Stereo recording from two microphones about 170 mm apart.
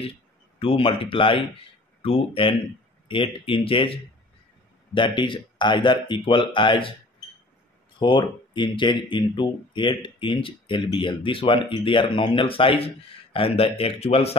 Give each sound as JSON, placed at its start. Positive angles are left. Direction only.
{"t": 0.6, "sound": "speech", "side_deg": 35}
{"t": 8.0, "sound": "speech", "side_deg": 30}